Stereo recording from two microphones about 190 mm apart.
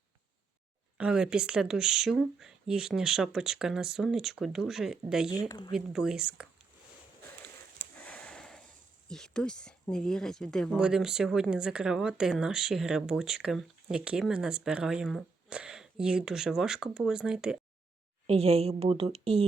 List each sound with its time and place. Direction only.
0.9 s speech: 5° right (ahead or behind)
5.5 s speech: 20° left (ahead or behind)
5.7 s speech: 5° right (ahead or behind)
8.0 s a sound: 5° left (ahead or behind)
9.0 s speech: 5° left (ahead or behind)
18.3 s a woman's voice: 30° right (ahead or behind)